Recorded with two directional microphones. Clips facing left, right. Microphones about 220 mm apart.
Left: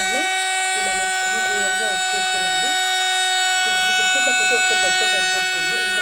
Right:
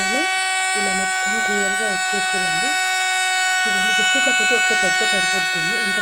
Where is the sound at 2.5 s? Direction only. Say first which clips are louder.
Even; 30° left (ahead or behind).